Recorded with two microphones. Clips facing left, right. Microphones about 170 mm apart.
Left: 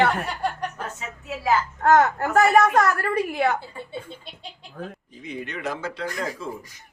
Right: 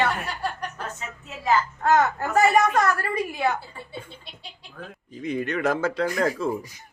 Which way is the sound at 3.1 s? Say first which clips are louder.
Left 4 dB; 65° left (ahead or behind).